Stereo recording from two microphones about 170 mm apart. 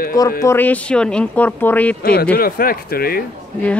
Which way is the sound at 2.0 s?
60° left (ahead or behind).